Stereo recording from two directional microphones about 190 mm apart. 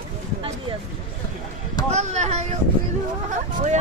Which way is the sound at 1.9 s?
35° right (ahead or behind).